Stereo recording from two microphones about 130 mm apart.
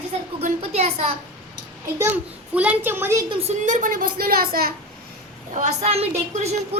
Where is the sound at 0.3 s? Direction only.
50° right (ahead or behind).